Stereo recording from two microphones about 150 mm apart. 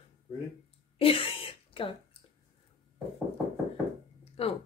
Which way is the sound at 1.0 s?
40° left (ahead or behind).